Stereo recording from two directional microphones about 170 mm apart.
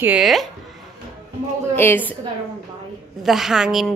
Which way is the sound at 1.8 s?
10° left (ahead or behind).